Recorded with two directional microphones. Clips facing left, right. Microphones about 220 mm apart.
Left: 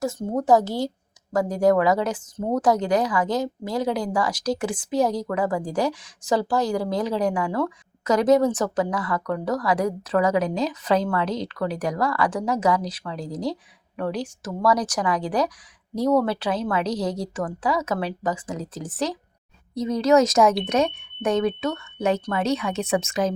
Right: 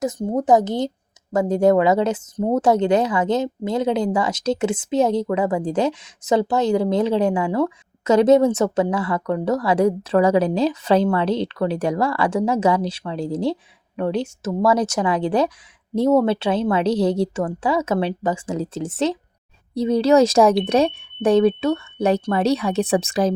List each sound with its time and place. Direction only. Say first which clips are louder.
0.0 s speech: right 3 dB; 20° right (ahead or behind)